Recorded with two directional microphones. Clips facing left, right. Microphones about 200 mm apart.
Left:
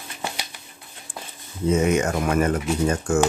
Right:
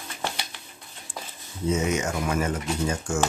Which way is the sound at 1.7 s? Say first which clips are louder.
Left 5 dB; 55° left (ahead or behind).